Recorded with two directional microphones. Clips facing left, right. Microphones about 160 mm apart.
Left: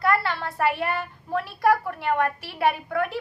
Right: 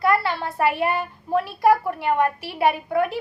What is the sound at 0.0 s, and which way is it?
A woman's voice, 15° right (ahead or behind).